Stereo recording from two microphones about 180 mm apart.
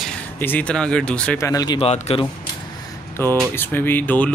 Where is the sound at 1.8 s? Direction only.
35° left (ahead or behind).